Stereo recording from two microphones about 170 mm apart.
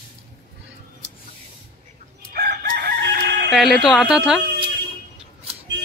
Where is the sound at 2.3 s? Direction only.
70° right (ahead or behind).